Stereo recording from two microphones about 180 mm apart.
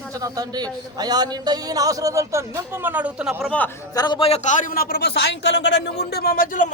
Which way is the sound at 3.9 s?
25° left (ahead or behind).